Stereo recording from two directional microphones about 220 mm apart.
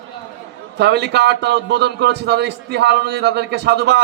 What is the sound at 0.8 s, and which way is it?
A man's voice, 50° right (ahead or behind).